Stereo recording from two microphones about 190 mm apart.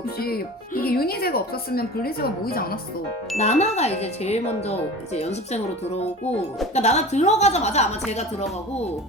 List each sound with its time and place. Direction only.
0.2 s speech: 55° left (ahead or behind)
3.3 s speech: 35° left (ahead or behind)